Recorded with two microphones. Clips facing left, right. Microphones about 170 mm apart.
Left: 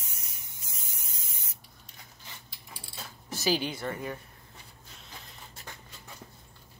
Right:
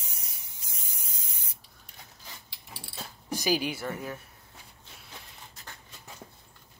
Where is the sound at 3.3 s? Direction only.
10° right (ahead or behind).